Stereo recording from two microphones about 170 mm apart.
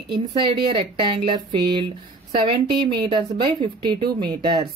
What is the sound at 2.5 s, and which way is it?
Speech, 30° right (ahead or behind).